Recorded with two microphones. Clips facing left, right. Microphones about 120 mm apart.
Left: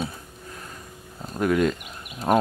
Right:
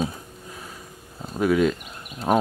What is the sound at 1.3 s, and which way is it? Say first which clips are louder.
Speech: right 2 dB; centre (ahead or behind).